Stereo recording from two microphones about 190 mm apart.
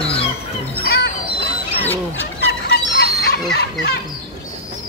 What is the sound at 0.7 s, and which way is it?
Music, 55° left (ahead or behind).